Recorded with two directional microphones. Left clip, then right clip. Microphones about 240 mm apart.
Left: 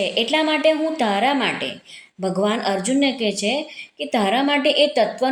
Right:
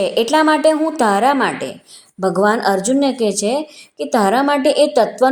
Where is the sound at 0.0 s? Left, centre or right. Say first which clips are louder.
Right 5 dB; right.